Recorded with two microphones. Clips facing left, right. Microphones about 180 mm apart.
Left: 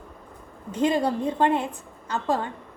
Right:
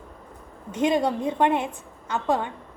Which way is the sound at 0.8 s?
20° right (ahead or behind).